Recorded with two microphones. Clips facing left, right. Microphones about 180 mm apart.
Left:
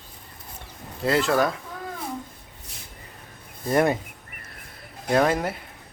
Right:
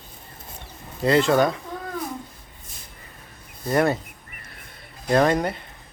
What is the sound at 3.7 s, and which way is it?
Speech, 20° left (ahead or behind).